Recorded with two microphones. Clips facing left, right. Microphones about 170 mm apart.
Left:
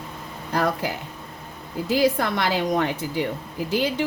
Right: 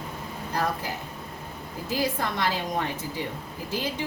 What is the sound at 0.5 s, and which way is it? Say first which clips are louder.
Speech: left 5 dB; 75° left (ahead or behind).